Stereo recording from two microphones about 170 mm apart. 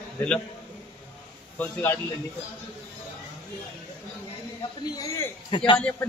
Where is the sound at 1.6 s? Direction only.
10° left (ahead or behind).